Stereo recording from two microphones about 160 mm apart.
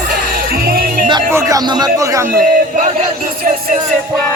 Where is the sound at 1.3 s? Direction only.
20° right (ahead or behind).